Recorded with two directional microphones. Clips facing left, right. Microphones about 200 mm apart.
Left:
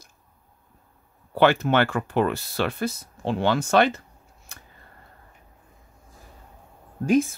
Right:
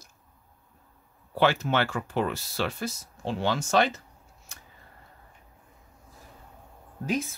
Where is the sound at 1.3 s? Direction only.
55° left (ahead or behind).